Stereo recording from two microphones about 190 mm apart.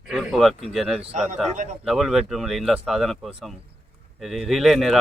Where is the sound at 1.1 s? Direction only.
40° right (ahead or behind).